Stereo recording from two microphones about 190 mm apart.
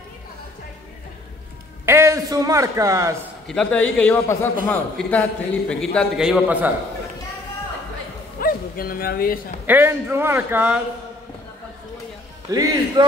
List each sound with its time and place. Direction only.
1.9 s a man's voice: 15° right (ahead or behind)
3.4 s a man's voice: 5° left (ahead or behind)
8.4 s speech: 50° left (ahead or behind)
9.7 s a man's voice: 10° right (ahead or behind)
12.4 s a man's voice: 20° right (ahead or behind)